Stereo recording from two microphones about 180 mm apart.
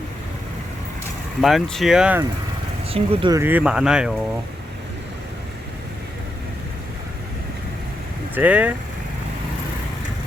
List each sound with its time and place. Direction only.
1.4 s speech: centre (ahead or behind)
2.9 s speech: 30° right (ahead or behind)
3.3 s speech: 10° right (ahead or behind)
8.4 s speech: 10° right (ahead or behind)